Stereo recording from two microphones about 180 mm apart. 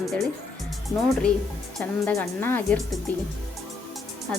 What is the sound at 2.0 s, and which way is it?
Speech, 15° left (ahead or behind).